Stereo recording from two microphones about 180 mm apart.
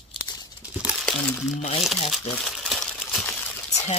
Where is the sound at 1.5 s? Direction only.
35° left (ahead or behind).